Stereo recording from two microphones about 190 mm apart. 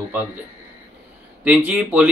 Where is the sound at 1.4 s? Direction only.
10° right (ahead or behind).